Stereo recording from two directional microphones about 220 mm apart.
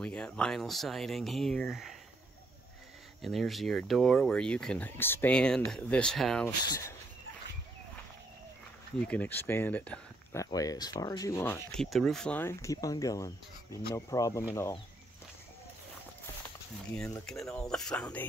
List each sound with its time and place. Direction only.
0.0 s speech: 5° left (ahead or behind)
3.2 s speech: centre (ahead or behind)
6.6 s speech: 15° left (ahead or behind)
9.0 s speech: 5° left (ahead or behind)
16.9 s speech: 5° left (ahead or behind)